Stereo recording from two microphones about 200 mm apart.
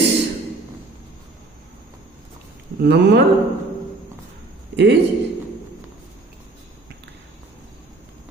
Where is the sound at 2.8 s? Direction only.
55° right (ahead or behind).